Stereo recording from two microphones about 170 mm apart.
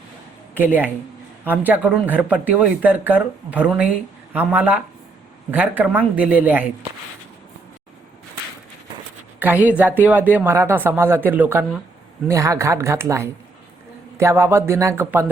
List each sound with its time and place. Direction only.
0.5 s speech: 10° right (ahead or behind)
9.4 s speech: 10° right (ahead or behind)